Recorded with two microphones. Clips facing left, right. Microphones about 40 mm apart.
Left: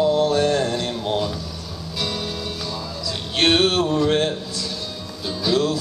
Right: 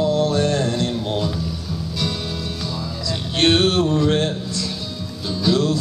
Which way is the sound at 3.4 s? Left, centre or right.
Centre.